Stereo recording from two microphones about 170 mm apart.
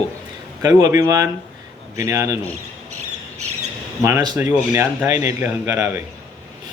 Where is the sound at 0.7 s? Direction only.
20° right (ahead or behind).